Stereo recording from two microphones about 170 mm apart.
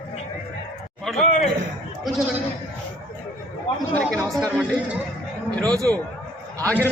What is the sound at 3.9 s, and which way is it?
Chatter, 5° left (ahead or behind).